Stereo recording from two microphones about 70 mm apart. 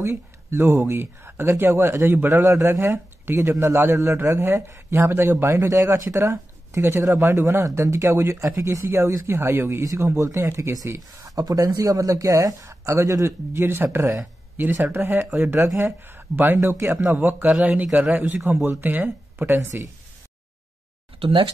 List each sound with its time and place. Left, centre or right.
0.0 s a man's voice: right
5.8 s a man's voice: right
11.2 s a man's voice: right